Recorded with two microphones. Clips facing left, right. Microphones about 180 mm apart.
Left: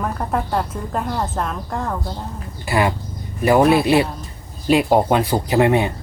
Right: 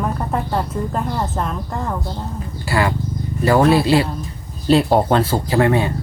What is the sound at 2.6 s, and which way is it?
Speech, 20° left (ahead or behind).